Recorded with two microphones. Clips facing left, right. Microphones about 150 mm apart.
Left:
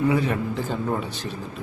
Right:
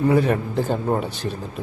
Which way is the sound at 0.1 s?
45° right (ahead or behind).